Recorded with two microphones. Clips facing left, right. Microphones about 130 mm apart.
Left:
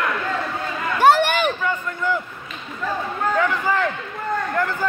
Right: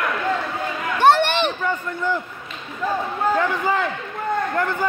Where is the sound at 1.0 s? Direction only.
10° left (ahead or behind).